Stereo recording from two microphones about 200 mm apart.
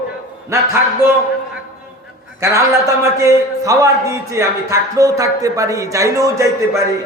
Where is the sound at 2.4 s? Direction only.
15° right (ahead or behind).